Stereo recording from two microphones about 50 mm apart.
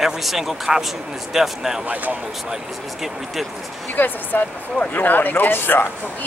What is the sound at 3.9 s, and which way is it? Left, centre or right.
Speech, left.